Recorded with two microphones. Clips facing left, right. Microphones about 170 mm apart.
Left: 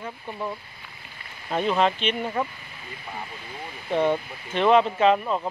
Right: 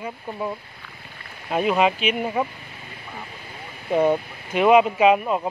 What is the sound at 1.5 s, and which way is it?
Speech, 10° right (ahead or behind).